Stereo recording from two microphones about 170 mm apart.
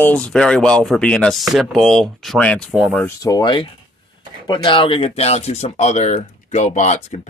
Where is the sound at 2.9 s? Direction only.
15° left (ahead or behind).